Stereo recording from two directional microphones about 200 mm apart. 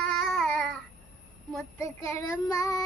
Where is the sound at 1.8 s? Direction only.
15° left (ahead or behind).